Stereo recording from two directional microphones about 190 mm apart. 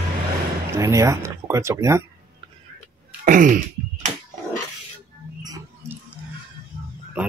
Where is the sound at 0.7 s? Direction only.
15° right (ahead or behind).